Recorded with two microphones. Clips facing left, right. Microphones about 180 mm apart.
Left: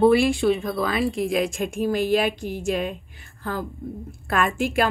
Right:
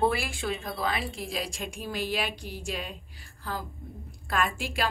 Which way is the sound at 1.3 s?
50° left (ahead or behind).